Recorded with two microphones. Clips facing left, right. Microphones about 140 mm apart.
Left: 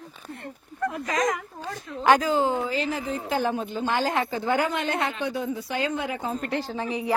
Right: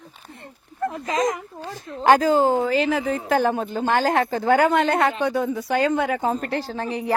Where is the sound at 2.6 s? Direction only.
75° right (ahead or behind).